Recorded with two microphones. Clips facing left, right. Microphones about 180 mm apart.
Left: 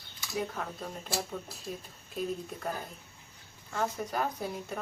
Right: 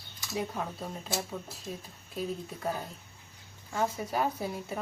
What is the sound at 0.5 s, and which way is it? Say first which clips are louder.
Speech: right 2 dB; 10° right (ahead or behind).